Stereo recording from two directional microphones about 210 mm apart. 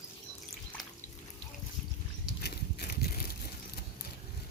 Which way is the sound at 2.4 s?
50° left (ahead or behind).